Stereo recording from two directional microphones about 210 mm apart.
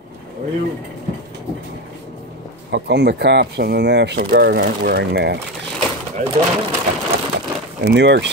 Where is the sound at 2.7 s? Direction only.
55° right (ahead or behind).